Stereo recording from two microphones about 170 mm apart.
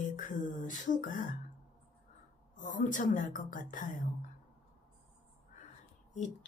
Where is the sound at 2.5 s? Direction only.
50° left (ahead or behind).